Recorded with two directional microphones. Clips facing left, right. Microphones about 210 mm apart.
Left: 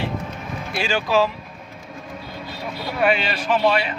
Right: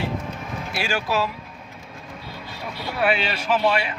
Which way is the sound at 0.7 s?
5° right (ahead or behind).